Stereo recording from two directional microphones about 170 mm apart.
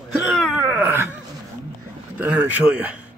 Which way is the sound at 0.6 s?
10° right (ahead or behind).